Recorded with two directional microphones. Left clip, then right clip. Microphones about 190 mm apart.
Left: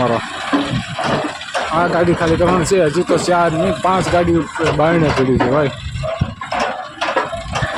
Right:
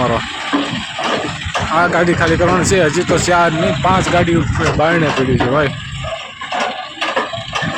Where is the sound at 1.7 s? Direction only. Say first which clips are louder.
Right 2 dB; 5° right (ahead or behind).